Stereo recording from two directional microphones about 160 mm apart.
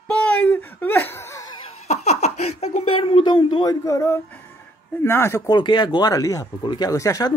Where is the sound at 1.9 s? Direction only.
45° left (ahead or behind); by 4.2 s 20° left (ahead or behind).